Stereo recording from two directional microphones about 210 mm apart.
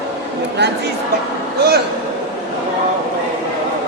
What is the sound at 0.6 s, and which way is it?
Speech, 55° right (ahead or behind).